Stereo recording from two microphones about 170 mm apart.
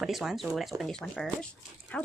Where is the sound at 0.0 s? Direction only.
Centre (ahead or behind).